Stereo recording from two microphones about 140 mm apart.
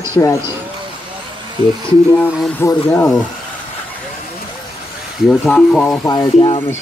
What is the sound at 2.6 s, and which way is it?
Speech, 20° left (ahead or behind).